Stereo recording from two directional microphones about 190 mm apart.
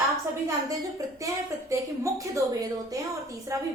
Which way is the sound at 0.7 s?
20° right (ahead or behind).